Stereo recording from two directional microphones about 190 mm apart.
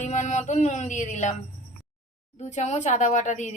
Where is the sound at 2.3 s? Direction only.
35° left (ahead or behind).